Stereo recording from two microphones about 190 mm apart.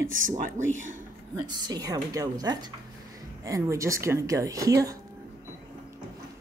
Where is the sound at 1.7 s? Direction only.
20° right (ahead or behind).